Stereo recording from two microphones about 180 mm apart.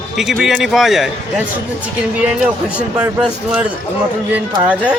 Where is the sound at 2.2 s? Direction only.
5° right (ahead or behind).